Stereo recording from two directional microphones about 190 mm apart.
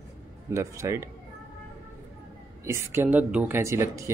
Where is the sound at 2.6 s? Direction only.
15° right (ahead or behind).